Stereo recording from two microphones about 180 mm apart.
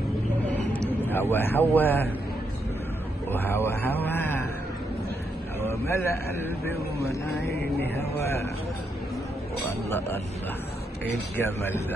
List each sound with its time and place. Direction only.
0.7 s vehicle: 10° left (ahead or behind)
1.3 s a man's voice: 10° left (ahead or behind)
3.3 s a man's voice: 10° left (ahead or behind)
5.6 s a man's voice: 15° left (ahead or behind)
9.7 s a man's voice: 15° left (ahead or behind)
11.3 s a man's voice: 10° left (ahead or behind)